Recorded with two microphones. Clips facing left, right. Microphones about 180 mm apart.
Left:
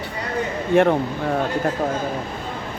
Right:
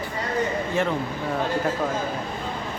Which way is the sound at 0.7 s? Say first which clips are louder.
Left 12 dB; 60° left (ahead or behind).